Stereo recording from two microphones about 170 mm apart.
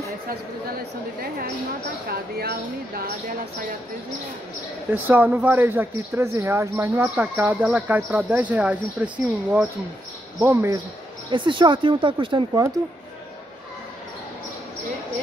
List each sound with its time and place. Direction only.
2.0 s speech: 70° right (ahead or behind)
4.9 s speech: 10° right (ahead or behind)
11.2 s speech: 30° right (ahead or behind)